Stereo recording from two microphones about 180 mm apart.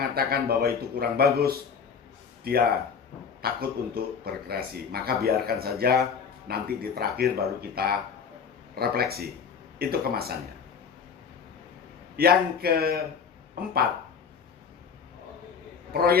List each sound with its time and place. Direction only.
0.1 s speech: 60° right (ahead or behind)
12.1 s speech: 60° right (ahead or behind)
15.9 s a man's voice: 60° right (ahead or behind)